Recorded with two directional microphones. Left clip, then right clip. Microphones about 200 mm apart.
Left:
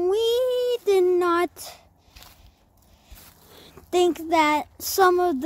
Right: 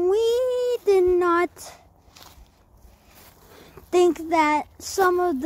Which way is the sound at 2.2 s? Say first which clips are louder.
Right 1 dB; 30° right (ahead or behind).